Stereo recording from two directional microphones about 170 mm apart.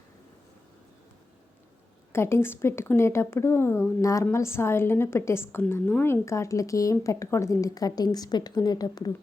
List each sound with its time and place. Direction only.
2.1 s speech: 15° left (ahead or behind)